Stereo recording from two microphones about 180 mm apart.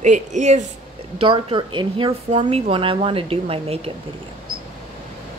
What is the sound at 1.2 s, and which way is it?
A woman's voice, 30° right (ahead or behind).